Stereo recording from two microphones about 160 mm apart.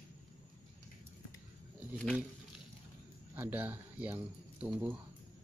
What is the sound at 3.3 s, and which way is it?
Speech, 10° right (ahead or behind).